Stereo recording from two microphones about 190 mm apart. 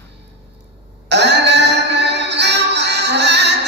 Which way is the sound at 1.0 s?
65° right (ahead or behind).